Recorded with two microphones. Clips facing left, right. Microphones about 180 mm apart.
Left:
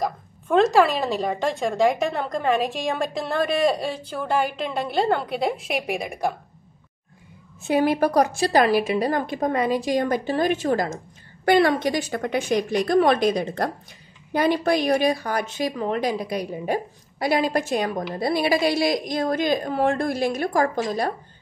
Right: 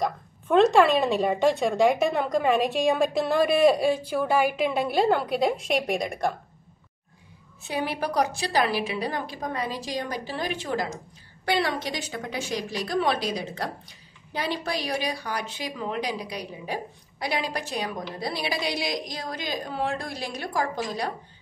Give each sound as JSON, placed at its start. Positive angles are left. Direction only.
{"t": 0.0, "sound": "speech", "side_deg": 0}
{"t": 7.6, "sound": "a woman's voice", "side_deg": 50}